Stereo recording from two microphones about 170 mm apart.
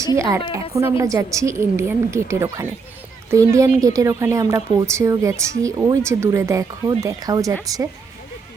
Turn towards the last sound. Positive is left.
turn(degrees=-20)  # may be behind; listen again after turning